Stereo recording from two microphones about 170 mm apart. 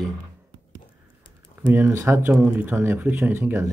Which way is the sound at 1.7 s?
15° right (ahead or behind).